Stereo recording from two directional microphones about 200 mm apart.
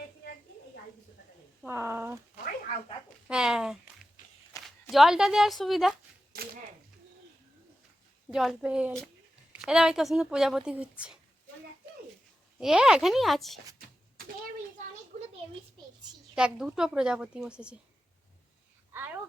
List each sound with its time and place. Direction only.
1.6 s speech: 10° right (ahead or behind)
3.2 s a woman's voice: 5° right (ahead or behind)
4.2 s walk: 40° left (ahead or behind)
4.6 s speech: centre (ahead or behind)
6.3 s a sound: 50° right (ahead or behind)
8.3 s a woman's voice: centre (ahead or behind)
12.5 s a woman's voice: 5° right (ahead or behind)
15.1 s a sound: 35° right (ahead or behind)
16.3 s a woman's voice: 5° right (ahead or behind)
18.9 s babbling: 10° right (ahead or behind)